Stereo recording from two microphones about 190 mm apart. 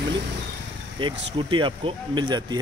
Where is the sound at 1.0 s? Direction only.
25° right (ahead or behind).